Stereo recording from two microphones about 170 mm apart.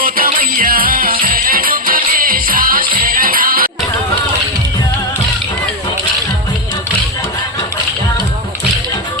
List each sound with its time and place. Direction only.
0.0 s music: 55° right (ahead or behind)